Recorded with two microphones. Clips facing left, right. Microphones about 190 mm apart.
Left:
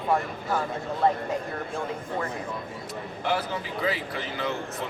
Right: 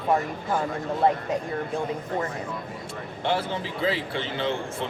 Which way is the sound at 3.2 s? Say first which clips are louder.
Right 2 dB; 30° right (ahead or behind).